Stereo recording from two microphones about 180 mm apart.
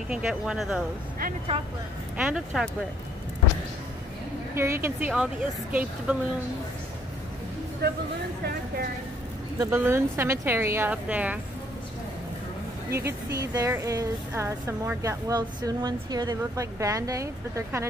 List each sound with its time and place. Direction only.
0.1 s speech: 5° right (ahead or behind)
2.1 s speech: centre (ahead or behind)
4.6 s speech: 15° right (ahead or behind)
9.6 s speech: 15° right (ahead or behind)
12.9 s speech: 15° right (ahead or behind)